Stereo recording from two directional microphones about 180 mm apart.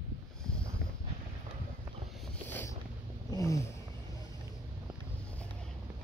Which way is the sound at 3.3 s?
15° left (ahead or behind).